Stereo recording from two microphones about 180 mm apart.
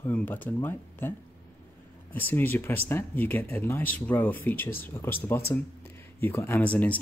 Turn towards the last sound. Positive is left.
turn(degrees=10)  # may be behind; listen again after turning